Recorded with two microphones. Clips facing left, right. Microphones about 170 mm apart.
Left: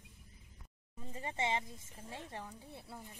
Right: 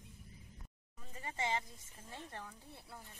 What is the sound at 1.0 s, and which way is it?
Speech, 25° left (ahead or behind).